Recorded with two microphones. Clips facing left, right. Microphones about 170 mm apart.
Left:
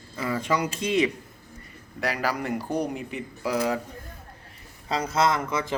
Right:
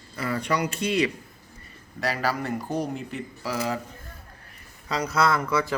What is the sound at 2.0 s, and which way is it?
A man's voice, 15° left (ahead or behind).